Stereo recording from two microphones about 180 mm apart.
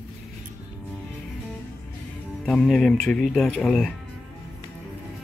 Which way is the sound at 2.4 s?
Centre (ahead or behind).